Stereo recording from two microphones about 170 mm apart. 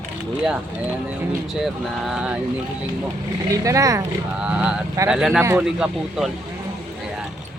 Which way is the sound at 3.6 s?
20° right (ahead or behind).